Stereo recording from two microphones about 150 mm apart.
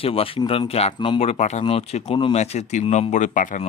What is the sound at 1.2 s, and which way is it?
A man's voice, 50° left (ahead or behind).